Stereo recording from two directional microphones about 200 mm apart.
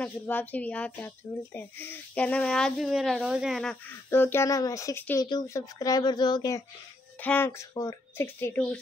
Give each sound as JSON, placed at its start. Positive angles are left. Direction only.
{"t": 0.0, "sound": "speech", "side_deg": 10}
{"t": 4.1, "sound": "speech", "side_deg": 10}